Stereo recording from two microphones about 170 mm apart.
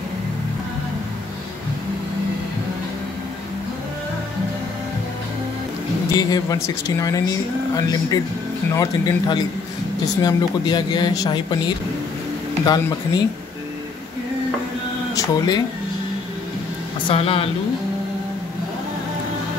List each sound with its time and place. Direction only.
6.1 s speech: 20° left (ahead or behind)
15.1 s speech: 25° left (ahead or behind)
17.1 s speech: 35° left (ahead or behind)